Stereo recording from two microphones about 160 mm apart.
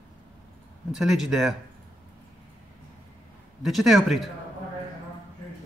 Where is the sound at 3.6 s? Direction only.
Centre (ahead or behind).